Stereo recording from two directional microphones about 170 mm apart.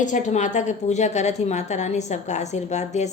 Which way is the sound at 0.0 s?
45° left (ahead or behind).